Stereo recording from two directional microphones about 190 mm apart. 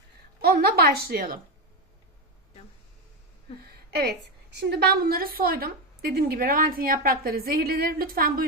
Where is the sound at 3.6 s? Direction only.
55° right (ahead or behind).